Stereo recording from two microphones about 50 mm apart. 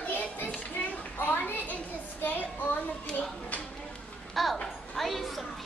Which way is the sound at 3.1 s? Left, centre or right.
Centre.